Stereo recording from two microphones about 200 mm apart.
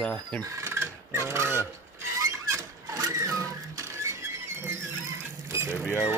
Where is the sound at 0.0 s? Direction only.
5° left (ahead or behind).